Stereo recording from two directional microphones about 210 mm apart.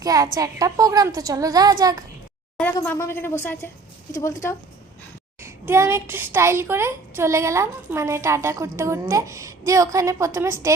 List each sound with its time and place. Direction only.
0.0 s a woman's voice: 15° right (ahead or behind)
2.6 s a woman's voice: 5° left (ahead or behind)
5.4 s a woman's voice: 10° right (ahead or behind)